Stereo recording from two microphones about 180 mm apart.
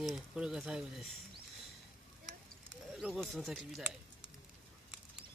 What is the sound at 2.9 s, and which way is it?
Speech, 5° right (ahead or behind).